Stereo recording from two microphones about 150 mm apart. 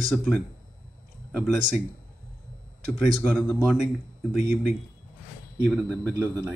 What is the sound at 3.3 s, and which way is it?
Speech, 10° left (ahead or behind).